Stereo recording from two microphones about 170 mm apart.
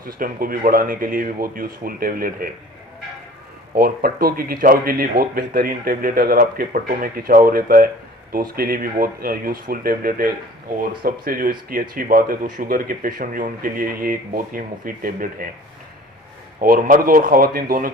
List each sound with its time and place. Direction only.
0.0 s speech: 55° right (ahead or behind)
3.8 s speech: 65° right (ahead or behind)
16.6 s speech: 55° right (ahead or behind)